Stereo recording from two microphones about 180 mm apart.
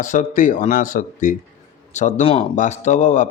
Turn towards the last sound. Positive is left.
turn(degrees=40)  # may be behind; listen again after turning